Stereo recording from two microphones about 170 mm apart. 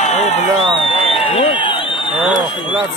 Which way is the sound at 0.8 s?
30° left (ahead or behind).